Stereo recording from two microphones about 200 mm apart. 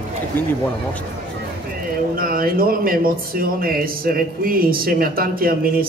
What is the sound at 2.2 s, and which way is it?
Speech, 45° right (ahead or behind).